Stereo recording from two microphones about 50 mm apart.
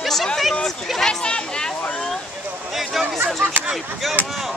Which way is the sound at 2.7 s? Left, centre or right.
Centre.